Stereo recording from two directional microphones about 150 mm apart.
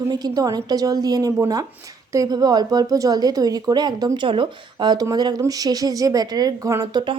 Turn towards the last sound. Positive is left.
turn(degrees=-25)  # may be behind; listen again after turning